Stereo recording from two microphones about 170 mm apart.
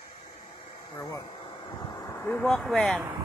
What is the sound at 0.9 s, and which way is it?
Vehicle, 25° left (ahead or behind).